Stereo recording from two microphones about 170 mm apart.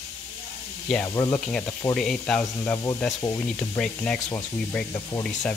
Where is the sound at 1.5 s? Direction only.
5° left (ahead or behind).